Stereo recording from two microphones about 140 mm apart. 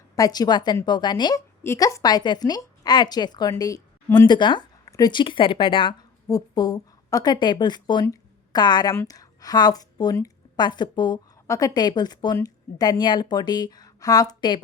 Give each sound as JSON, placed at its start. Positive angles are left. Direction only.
{"t": 0.2, "sound": "a woman's voice", "side_deg": 30}
{"t": 1.6, "sound": "a woman's voice", "side_deg": 20}